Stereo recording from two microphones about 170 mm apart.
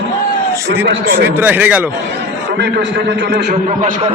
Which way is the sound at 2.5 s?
80° right.